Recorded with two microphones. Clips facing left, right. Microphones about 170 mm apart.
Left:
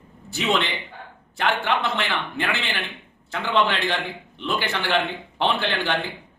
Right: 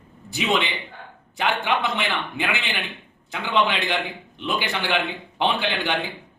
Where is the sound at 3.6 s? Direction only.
15° right (ahead or behind).